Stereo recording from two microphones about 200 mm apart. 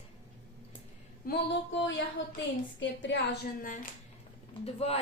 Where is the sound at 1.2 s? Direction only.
60° left (ahead or behind).